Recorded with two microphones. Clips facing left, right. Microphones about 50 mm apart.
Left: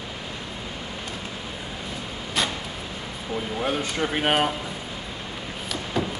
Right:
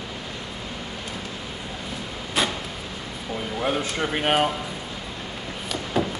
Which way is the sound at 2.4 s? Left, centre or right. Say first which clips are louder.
Right 2 dB; centre.